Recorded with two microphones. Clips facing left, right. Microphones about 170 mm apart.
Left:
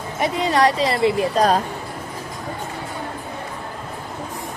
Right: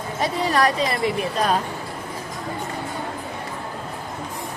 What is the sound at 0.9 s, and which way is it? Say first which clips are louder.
Speech: left 5 dB; 30° left (ahead or behind).